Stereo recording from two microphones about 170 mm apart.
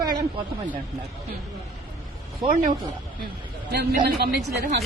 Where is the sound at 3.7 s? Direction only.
65° right (ahead or behind).